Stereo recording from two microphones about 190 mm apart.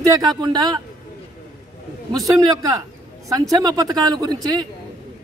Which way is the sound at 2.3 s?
20° right (ahead or behind).